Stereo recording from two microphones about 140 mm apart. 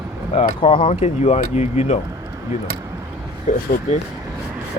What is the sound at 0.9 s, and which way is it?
Speech, 55° left (ahead or behind).